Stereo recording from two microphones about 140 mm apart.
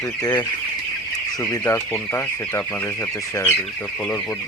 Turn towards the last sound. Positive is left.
turn(degrees=15)  # may be behind; listen again after turning